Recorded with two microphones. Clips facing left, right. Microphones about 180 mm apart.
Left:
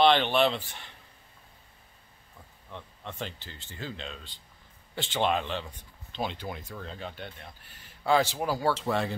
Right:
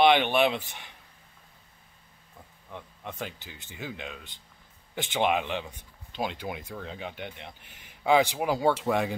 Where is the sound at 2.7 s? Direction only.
10° right (ahead or behind).